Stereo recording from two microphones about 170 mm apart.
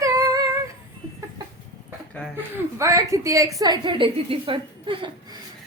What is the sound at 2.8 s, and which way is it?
A woman's voice, 20° right (ahead or behind).